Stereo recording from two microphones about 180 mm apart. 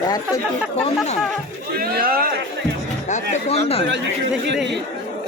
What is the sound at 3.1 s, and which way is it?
Speech, 35° left (ahead or behind).